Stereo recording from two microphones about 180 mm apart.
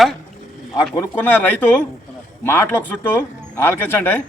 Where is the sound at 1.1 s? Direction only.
10° left (ahead or behind).